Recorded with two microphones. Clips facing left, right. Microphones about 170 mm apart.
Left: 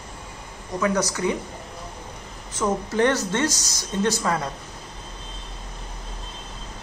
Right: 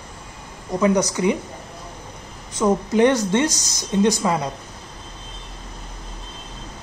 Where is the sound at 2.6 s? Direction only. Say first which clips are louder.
Right 5 dB; 15° right (ahead or behind).